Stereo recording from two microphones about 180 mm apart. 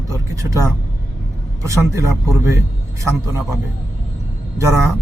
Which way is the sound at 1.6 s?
15° right (ahead or behind).